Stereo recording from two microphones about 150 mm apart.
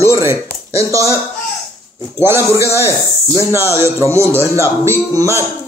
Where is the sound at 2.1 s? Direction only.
15° right (ahead or behind).